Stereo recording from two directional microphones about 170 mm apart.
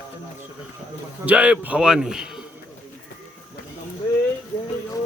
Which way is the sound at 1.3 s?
5° right (ahead or behind).